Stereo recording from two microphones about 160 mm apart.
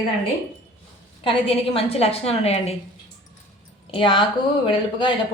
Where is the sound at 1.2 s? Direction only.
35° left (ahead or behind).